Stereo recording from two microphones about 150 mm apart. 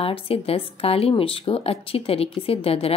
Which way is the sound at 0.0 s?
40° left (ahead or behind).